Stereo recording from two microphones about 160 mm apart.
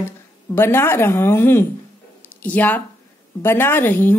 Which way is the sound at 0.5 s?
15° left (ahead or behind).